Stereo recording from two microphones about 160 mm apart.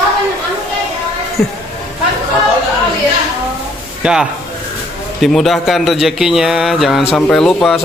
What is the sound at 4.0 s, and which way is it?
Speech, 5° right (ahead or behind).